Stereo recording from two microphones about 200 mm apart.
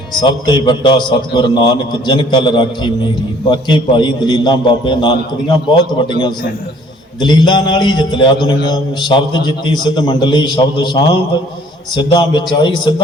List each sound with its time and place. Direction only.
0.2 s a man's voice: 20° left (ahead or behind)
7.2 s a man's voice: 20° left (ahead or behind)